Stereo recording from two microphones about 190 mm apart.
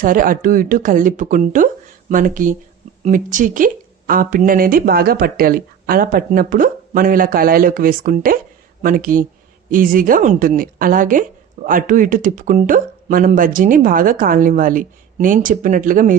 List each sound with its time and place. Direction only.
0.0 s a woman's voice: 45° right (ahead or behind)